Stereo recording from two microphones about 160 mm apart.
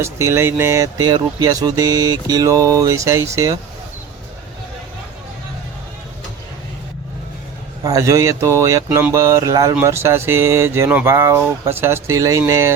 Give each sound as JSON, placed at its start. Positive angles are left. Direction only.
{"t": 0.0, "sound": "speech", "side_deg": -15}
{"t": 7.9, "sound": "speech", "side_deg": -20}